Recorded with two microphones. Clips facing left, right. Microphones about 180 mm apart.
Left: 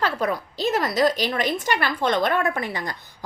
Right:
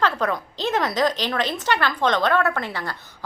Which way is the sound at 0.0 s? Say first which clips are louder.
Right 1 dB; 10° left (ahead or behind).